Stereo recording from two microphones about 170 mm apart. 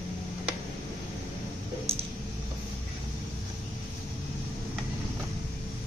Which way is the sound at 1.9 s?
35° right (ahead or behind).